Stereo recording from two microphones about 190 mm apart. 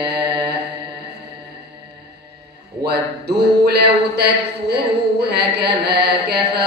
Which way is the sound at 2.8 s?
60° right (ahead or behind).